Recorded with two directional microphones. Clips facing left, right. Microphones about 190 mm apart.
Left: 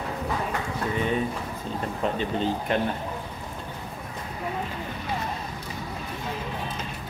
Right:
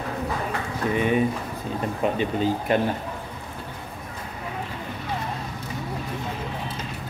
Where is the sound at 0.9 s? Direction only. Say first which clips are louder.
Right 5 dB; 15° right (ahead or behind).